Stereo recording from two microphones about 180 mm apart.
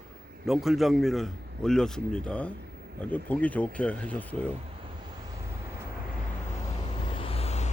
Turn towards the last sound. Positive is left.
turn(degrees=35)  # may be behind; listen again after turning